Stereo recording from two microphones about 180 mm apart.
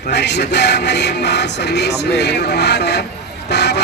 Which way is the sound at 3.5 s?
70° left (ahead or behind).